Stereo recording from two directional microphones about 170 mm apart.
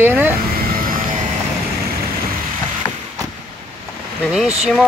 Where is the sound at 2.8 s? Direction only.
20° left (ahead or behind).